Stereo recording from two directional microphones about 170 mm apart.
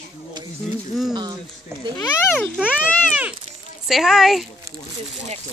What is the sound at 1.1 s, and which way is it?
Speech, 25° right (ahead or behind).